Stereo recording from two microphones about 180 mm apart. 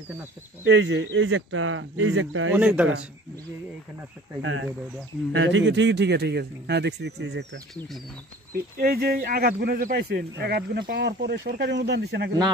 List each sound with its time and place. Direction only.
0.7 s speech: 70° right (ahead or behind); by 2.5 s 90° right
2.5 s speech: 5° right (ahead or behind)
4.4 s a man's voice: 90° right; by 7.4 s 75° right (ahead or behind)
8.5 s speech: 60° right (ahead or behind); by 12.3 s 75° right (ahead or behind)